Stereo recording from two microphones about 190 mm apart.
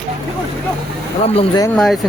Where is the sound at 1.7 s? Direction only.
Centre (ahead or behind).